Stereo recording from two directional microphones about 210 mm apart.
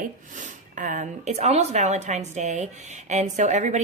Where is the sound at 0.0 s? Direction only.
40° right (ahead or behind).